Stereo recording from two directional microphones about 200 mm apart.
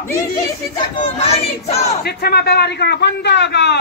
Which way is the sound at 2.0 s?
50° left (ahead or behind).